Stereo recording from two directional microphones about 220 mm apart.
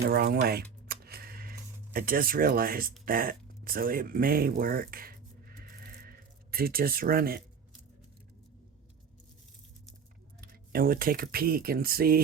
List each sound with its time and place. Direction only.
0.0 s music: 45° right (ahead or behind)
3.1 s speech: 40° right (ahead or behind)
10.4 s speech: 40° right (ahead or behind)